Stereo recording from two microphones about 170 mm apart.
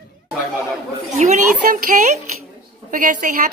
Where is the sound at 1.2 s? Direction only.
45° right (ahead or behind).